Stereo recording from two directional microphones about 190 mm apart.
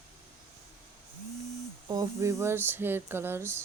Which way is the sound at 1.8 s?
20° right (ahead or behind).